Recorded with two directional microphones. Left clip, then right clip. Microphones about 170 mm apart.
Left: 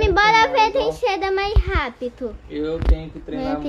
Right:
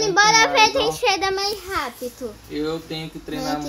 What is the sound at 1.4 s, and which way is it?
Speech, 10° left (ahead or behind).